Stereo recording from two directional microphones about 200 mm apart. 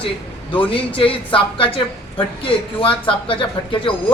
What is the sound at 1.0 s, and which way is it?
A woman's voice, 25° left (ahead or behind).